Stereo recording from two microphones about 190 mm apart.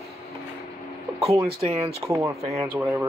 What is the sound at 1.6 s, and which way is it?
Speech, 30° right (ahead or behind).